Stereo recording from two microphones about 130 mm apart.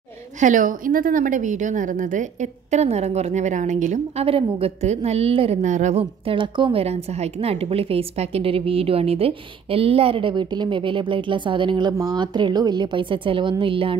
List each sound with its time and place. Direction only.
0.4 s a woman's voice: 85° right
2.7 s a woman's voice: 55° right (ahead or behind)
4.3 s a woman's voice: 50° right (ahead or behind)
5.6 s a woman's voice: 65° right (ahead or behind)
6.2 s a woman's voice: 40° right (ahead or behind)
6.8 s a woman's voice: 55° right (ahead or behind)